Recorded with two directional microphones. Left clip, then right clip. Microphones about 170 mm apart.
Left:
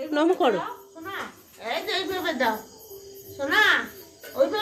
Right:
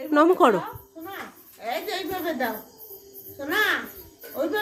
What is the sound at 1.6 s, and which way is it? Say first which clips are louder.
A woman's voice: left 1 dB; 35° right (ahead or behind).